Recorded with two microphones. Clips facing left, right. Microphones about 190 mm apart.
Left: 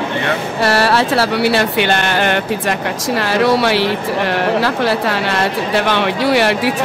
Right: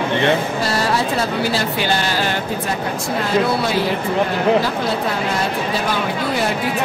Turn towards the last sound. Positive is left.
turn(degrees=80)